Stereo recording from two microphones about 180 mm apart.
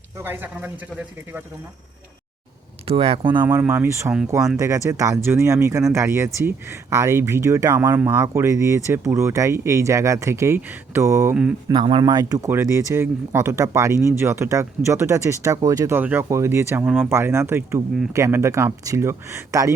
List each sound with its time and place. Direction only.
0.2 s speech: 10° right (ahead or behind)
2.8 s speech: 35° right (ahead or behind)
3.6 s speech: 15° right (ahead or behind)